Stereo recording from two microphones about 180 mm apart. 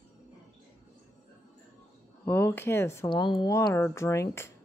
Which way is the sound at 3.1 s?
25° left (ahead or behind).